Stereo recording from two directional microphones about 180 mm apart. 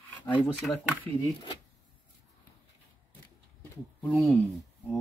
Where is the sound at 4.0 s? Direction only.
5° left (ahead or behind).